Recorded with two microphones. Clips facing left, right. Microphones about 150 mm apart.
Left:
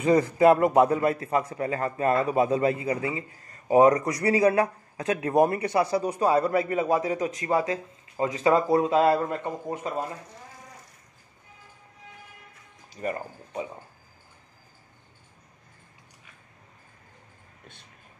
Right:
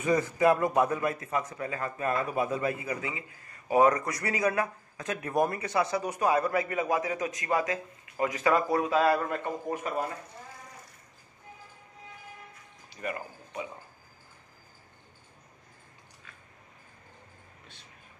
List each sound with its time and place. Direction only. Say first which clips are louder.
0.7 s a man's voice: left 6 dB; 25° left (ahead or behind)
12.9 s speech: left 5 dB; 35° left (ahead or behind)